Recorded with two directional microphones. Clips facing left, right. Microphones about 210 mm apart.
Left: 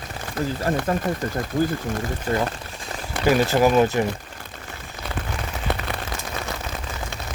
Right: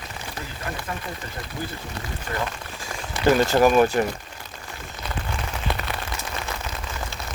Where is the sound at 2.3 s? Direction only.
40° left (ahead or behind).